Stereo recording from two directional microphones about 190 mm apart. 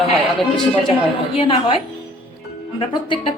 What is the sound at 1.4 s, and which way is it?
A woman's voice, 25° left (ahead or behind).